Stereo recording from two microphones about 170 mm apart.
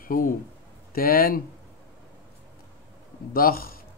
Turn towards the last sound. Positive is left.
turn(degrees=60)  # may be behind; listen again after turning